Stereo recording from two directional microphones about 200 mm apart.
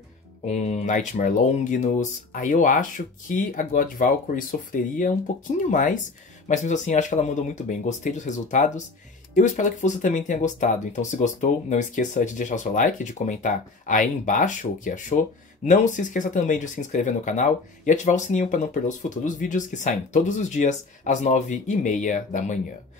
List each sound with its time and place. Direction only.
0.5 s speech: 35° left (ahead or behind)